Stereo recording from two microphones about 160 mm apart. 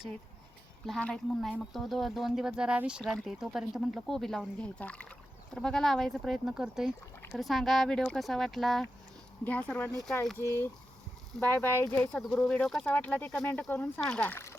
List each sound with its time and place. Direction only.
0.9 s speech: 5° left (ahead or behind)
12.5 s speech: centre (ahead or behind)